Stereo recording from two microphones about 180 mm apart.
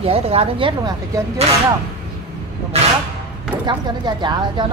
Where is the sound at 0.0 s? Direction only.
35° right (ahead or behind).